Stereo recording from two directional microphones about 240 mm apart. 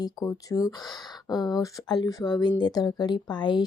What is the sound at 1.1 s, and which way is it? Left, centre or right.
Speech, centre.